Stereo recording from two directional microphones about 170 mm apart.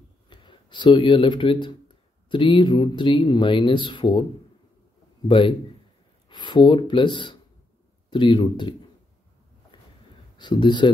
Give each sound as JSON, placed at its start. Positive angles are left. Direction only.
{"t": 0.3, "sound": "speech", "side_deg": 25}
{"t": 6.2, "sound": "speech", "side_deg": 25}
{"t": 10.3, "sound": "speech", "side_deg": 25}